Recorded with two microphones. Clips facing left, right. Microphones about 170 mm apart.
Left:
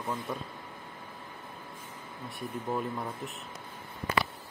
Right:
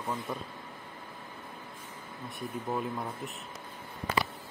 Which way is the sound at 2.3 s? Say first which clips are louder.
Left 1 dB; centre (ahead or behind).